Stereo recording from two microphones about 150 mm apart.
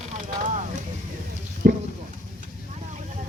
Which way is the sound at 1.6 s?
90° right.